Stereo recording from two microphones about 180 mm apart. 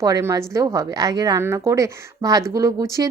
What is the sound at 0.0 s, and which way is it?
A woman's voice, 15° right (ahead or behind).